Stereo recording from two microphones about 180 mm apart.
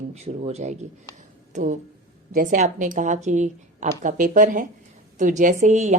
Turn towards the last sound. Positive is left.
turn(degrees=-40)  # may be behind; listen again after turning